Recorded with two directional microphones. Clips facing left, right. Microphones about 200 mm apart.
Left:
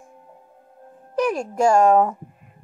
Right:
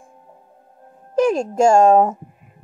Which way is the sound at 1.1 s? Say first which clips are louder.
Right 5 dB; 25° right (ahead or behind).